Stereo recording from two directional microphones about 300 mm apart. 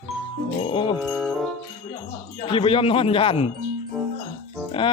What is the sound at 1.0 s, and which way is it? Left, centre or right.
Music, centre.